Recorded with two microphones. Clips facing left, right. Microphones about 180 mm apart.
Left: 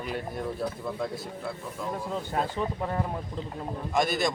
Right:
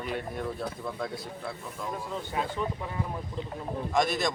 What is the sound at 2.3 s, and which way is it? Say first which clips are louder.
Speech: left 1 dB; 45° left (ahead or behind).